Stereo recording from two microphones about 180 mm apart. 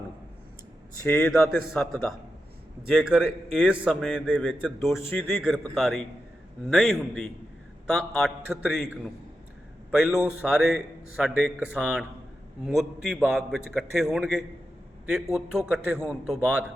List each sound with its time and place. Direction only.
1.0 s a man's voice: 10° left (ahead or behind)
2.9 s a man's voice: 5° right (ahead or behind)
5.0 s a man's voice: 10° left (ahead or behind)
5.4 s a man's voice: 5° right (ahead or behind)